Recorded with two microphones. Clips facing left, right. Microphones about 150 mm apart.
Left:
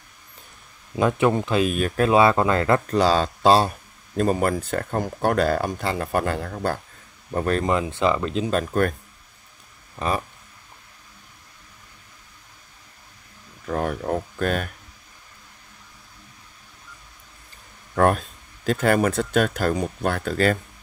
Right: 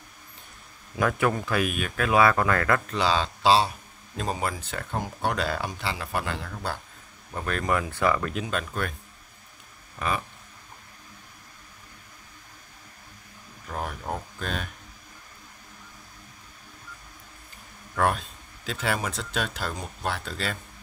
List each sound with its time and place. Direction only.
0.9 s speech: 20° left (ahead or behind)
1.8 s speech: 35° left (ahead or behind)
2.9 s speech: 45° left (ahead or behind)
7.3 s speech: 35° left (ahead or behind)
7.6 s speech: 25° left (ahead or behind)
8.5 s speech: 45° left (ahead or behind)
9.9 s speech: 35° left (ahead or behind)
13.7 s speech: 55° left (ahead or behind)
17.9 s speech: 45° left (ahead or behind)